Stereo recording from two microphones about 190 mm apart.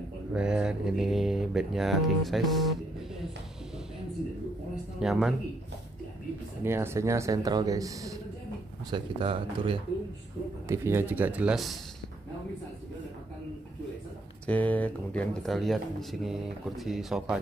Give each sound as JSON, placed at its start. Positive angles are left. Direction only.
{"t": 0.3, "sound": "speech", "side_deg": -5}
{"t": 5.0, "sound": "speech", "side_deg": 0}
{"t": 6.6, "sound": "a man's voice", "side_deg": -15}
{"t": 10.7, "sound": "a man's voice", "side_deg": -15}
{"t": 14.4, "sound": "speech", "side_deg": 10}